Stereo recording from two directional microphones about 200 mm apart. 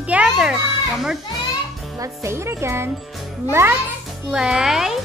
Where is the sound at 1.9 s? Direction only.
15° right (ahead or behind).